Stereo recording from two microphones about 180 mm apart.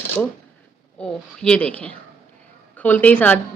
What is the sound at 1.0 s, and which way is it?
A woman's voice, 5° left (ahead or behind).